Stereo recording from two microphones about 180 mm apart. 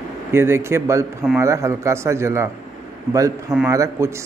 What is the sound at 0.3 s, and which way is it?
A man's voice, 15° right (ahead or behind).